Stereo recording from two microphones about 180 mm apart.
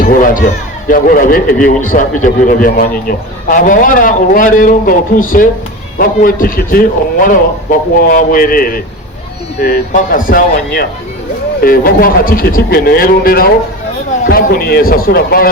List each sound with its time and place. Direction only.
0.0 s a man's voice: 50° left (ahead or behind)